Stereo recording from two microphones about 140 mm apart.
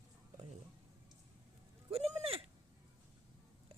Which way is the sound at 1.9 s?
45° right (ahead or behind).